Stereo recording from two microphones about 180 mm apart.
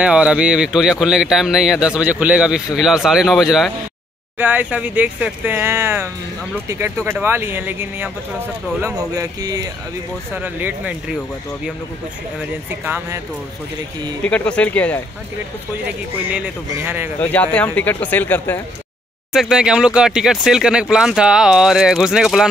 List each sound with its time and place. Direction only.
0.0 s speech: 5° right (ahead or behind)
10.3 s speech: 10° right (ahead or behind)
12.4 s speech: 10° right (ahead or behind)
14.2 s speech: 5° left (ahead or behind)
16.3 s speech: 10° right (ahead or behind)
17.2 s speech: 10° left (ahead or behind)
19.3 s speech: 5° right (ahead or behind)